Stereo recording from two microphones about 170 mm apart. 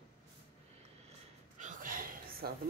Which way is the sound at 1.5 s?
50° right (ahead or behind).